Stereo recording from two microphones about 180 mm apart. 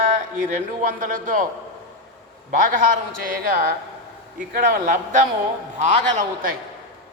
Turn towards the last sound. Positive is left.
turn(degrees=-45)  # may be behind; listen again after turning